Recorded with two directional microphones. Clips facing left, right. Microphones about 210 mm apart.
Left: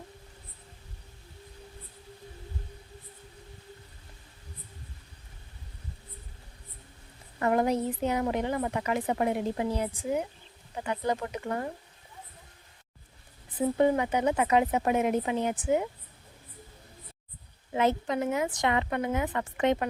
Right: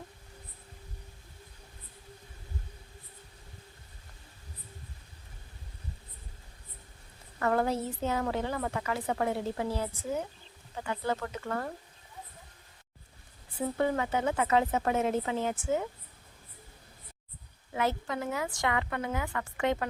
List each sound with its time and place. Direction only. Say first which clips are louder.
7.3 s a woman's voice: left 3 dB; 20° left (ahead or behind)
13.6 s a woman's voice: left 5 dB; 20° left (ahead or behind)
17.7 s a woman's voice: left 5 dB; 20° left (ahead or behind)